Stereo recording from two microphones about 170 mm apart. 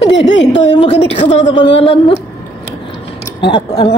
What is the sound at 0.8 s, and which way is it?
Speech, 35° left (ahead or behind).